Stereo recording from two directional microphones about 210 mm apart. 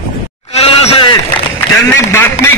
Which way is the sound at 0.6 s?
30° left (ahead or behind).